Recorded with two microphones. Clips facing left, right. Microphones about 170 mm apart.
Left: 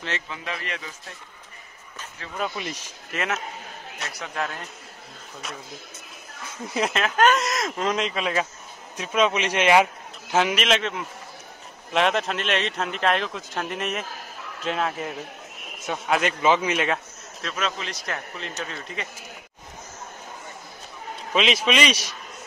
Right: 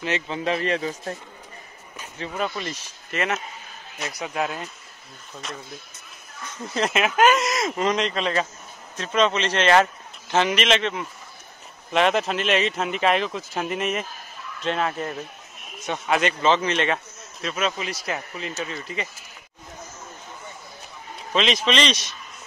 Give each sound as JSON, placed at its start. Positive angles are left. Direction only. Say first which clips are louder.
{"t": 0.3, "sound": "a man's voice", "louder": "right 9 dB", "side_deg": -30}
{"t": 2.5, "sound": "speech", "louder": "right 1 dB", "side_deg": 10}
{"t": 3.1, "sound": "a man's voice", "louder": "right 2 dB", "side_deg": 0}
{"t": 4.2, "sound": "speech", "louder": "right 3 dB", "side_deg": -15}
{"t": 6.9, "sound": "a man's voice", "louder": "right 2 dB", "side_deg": -5}
{"t": 21.3, "sound": "speech", "louder": "even", "side_deg": 5}